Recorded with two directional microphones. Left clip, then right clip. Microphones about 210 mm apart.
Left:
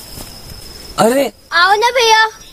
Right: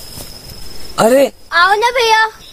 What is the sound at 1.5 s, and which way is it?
Speech, 5° left (ahead or behind).